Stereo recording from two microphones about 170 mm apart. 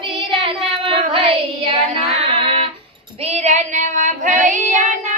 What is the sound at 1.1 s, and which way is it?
Child singing, 35° right (ahead or behind).